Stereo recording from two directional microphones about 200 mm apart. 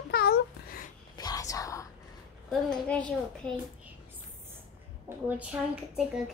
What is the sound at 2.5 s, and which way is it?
Speech, 5° left (ahead or behind).